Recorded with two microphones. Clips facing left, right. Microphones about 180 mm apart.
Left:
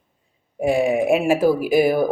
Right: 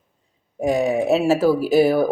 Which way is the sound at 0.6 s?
10° left (ahead or behind).